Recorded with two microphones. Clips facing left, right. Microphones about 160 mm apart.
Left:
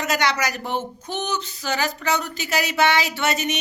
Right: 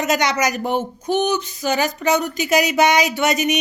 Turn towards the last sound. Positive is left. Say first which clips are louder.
# right 5 dB
turn(degrees=-15)  # may be behind; listen again after turning